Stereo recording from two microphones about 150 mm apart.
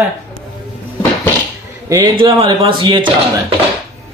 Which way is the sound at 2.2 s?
35° right (ahead or behind).